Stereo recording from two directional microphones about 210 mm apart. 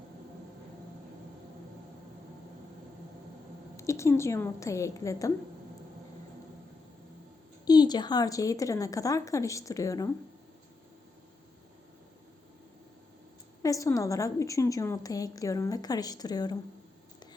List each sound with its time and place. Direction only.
3.8 s a woman's voice: 15° left (ahead or behind)
7.6 s a woman's voice: 20° left (ahead or behind)
13.6 s a woman's voice: 15° left (ahead or behind)